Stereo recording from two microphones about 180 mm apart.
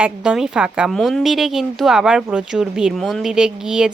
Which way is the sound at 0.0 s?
5° right (ahead or behind).